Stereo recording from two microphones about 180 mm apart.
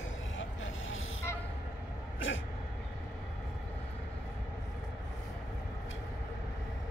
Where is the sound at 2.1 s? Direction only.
90° left.